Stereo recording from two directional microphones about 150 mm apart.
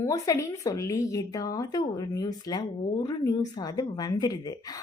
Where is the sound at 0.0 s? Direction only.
20° left (ahead or behind).